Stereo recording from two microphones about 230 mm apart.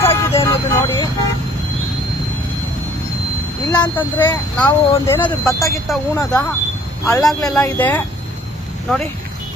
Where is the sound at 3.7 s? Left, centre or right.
Centre.